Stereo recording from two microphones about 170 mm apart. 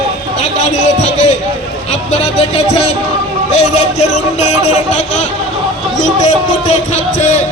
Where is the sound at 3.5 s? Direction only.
40° left (ahead or behind).